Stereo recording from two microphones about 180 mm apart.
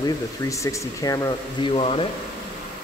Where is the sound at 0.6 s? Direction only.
15° left (ahead or behind).